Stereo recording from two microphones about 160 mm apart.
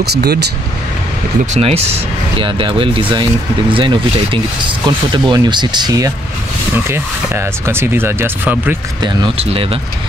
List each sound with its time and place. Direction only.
0.0 s speech: 90° right
1.4 s speech: 45° right (ahead or behind); by 8.7 s 15° right (ahead or behind)
9.0 s speech: 35° right (ahead or behind)